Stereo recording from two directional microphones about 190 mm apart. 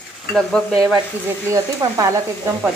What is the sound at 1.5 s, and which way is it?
Speech, 20° right (ahead or behind).